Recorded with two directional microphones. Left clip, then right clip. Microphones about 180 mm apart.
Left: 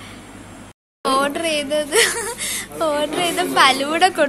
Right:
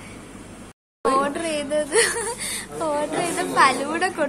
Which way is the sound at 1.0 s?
Centre (ahead or behind).